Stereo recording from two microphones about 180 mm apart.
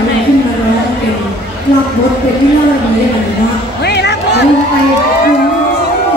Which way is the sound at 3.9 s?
70° left (ahead or behind).